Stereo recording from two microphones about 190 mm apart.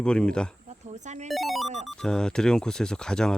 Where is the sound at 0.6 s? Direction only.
40° right (ahead or behind).